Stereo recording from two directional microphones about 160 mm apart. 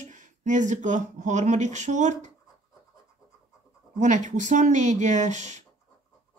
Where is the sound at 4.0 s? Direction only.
50° right (ahead or behind).